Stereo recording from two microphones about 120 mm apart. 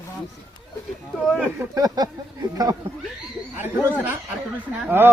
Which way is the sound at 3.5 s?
15° right (ahead or behind).